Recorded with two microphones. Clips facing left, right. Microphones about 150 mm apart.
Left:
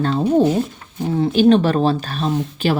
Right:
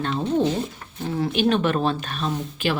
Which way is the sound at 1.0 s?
25° left (ahead or behind).